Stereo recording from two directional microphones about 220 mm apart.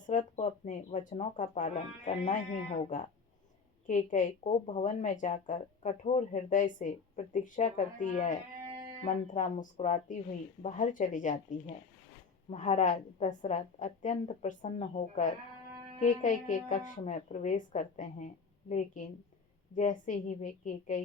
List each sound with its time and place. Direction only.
0.1 s speech: 35° left (ahead or behind)
12.5 s speech: 30° left (ahead or behind)